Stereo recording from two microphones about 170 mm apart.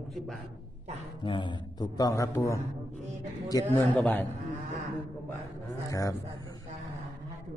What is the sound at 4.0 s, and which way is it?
Speech, 10° left (ahead or behind).